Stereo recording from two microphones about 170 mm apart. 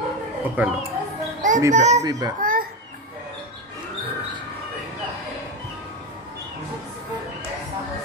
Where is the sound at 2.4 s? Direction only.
55° right (ahead or behind).